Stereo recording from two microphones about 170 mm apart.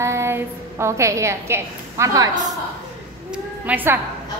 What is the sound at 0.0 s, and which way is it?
A woman's voice, 15° right (ahead or behind).